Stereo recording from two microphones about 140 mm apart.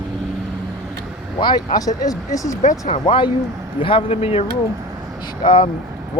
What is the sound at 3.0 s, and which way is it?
A man's voice, 35° left (ahead or behind).